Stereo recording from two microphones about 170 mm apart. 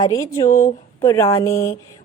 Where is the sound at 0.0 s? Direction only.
20° left (ahead or behind).